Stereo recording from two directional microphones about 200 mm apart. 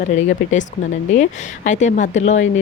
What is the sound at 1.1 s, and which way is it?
Speech, 35° left (ahead or behind).